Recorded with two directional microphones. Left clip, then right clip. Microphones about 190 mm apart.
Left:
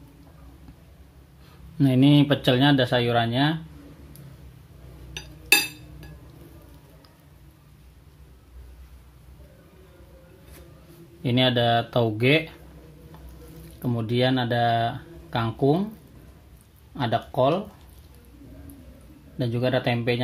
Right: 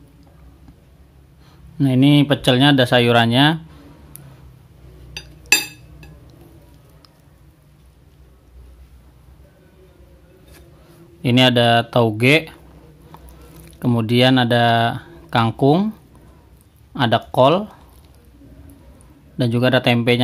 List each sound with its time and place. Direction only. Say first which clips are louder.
1.8 s speech: right 4 dB; 15° right (ahead or behind); by 3.5 s 45° right (ahead or behind)
11.2 s speech: right 7 dB; 30° right (ahead or behind)
13.8 s speech: right 8 dB; 40° right (ahead or behind)
16.9 s speech: right 8 dB; 40° right (ahead or behind)
19.3 s speech: right 8 dB; 45° right (ahead or behind)